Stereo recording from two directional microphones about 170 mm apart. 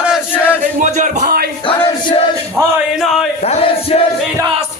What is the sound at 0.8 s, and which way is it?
Music, 45° right (ahead or behind).